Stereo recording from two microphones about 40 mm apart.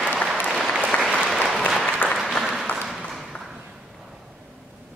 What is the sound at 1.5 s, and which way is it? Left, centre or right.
Applause, centre.